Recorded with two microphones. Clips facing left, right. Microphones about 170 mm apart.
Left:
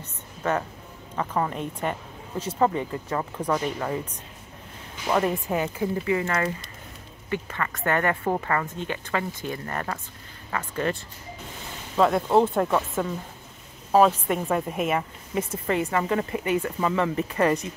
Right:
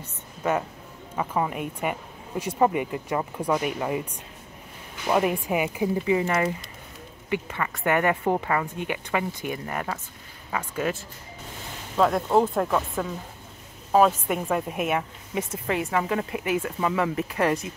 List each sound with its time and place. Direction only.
0.0 s music: 10° right (ahead or behind)
1.1 s speech: 10° right (ahead or behind)
5.0 s a woman's voice: 10° right (ahead or behind)